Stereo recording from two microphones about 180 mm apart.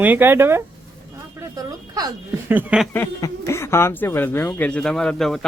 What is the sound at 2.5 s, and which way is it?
Speech, 10° right (ahead or behind).